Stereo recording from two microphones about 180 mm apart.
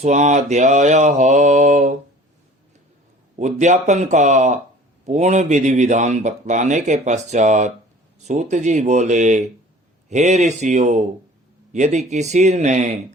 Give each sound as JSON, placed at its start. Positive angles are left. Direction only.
{"t": 0.0, "sound": "speech", "side_deg": -40}
{"t": 3.3, "sound": "speech", "side_deg": -40}